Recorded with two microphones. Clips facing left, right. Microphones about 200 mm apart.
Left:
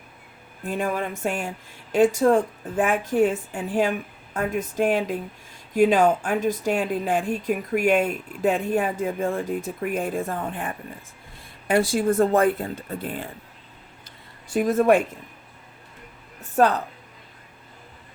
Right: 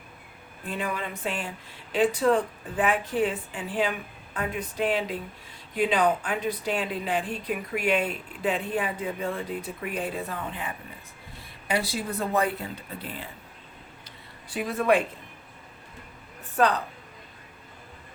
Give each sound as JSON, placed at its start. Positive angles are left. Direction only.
{"t": 0.7, "sound": "speech", "side_deg": 45}
{"t": 14.5, "sound": "speech", "side_deg": 45}
{"t": 16.4, "sound": "a woman's voice", "side_deg": 45}